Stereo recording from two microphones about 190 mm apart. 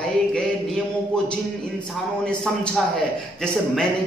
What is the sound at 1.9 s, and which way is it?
Speech, 5° left (ahead or behind).